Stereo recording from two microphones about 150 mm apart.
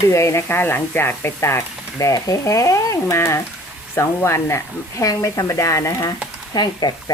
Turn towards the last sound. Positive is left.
turn(degrees=30)  # may be behind; listen again after turning